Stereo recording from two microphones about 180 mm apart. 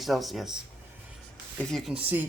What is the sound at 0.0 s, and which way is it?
Speech, centre (ahead or behind).